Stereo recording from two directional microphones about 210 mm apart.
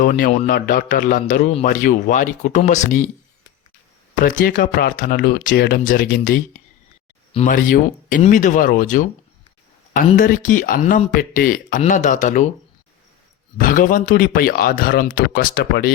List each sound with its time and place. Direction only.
0.0 s a man's voice: 40° left (ahead or behind)
4.2 s a man's voice: 40° left (ahead or behind)
13.6 s speech: 40° left (ahead or behind)